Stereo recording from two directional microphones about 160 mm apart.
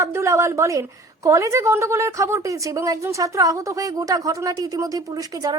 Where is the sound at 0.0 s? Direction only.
20° right (ahead or behind).